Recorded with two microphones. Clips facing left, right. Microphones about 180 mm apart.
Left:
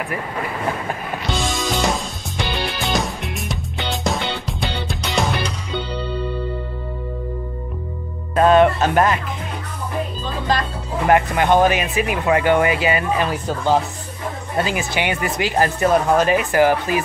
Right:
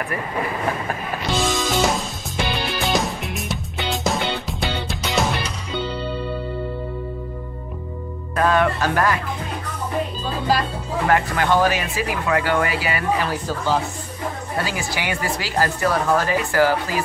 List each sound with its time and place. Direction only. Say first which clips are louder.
1.3 s music: right 2 dB; centre (ahead or behind)
8.4 s music: left 5 dB; 25° left (ahead or behind)
10.2 s music: even; 10° right (ahead or behind)
11.1 s speech: left 4 dB; 20° left (ahead or behind)